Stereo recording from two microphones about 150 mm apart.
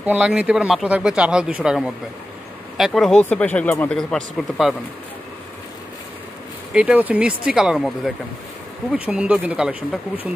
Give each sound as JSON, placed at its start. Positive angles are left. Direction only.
{"t": 0.0, "sound": "speech", "side_deg": -5}
{"t": 6.7, "sound": "speech", "side_deg": -5}